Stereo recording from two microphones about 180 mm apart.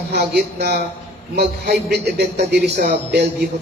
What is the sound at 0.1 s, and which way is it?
A man's voice, 65° right (ahead or behind).